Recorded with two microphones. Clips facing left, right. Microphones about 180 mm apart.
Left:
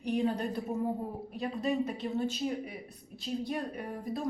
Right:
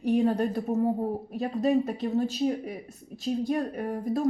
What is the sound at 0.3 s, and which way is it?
A woman's voice, 45° right (ahead or behind).